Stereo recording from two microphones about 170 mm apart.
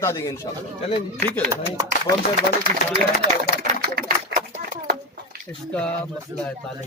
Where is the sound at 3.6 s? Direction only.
55° right (ahead or behind).